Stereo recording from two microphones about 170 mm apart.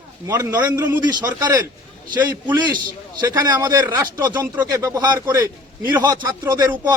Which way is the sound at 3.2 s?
20° right (ahead or behind).